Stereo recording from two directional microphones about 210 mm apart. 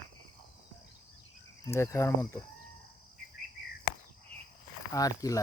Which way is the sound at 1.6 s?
15° left (ahead or behind).